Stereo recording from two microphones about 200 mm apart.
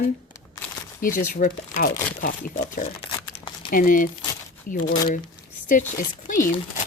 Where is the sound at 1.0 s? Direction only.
45° left (ahead or behind).